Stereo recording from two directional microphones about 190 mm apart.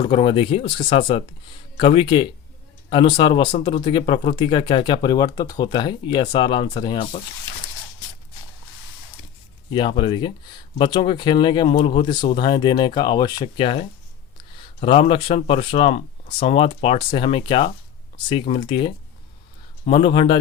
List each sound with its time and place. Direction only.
0.0 s speech: 25° left (ahead or behind)
9.6 s speech: 25° left (ahead or behind)